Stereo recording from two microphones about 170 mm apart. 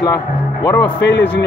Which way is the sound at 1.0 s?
90° left.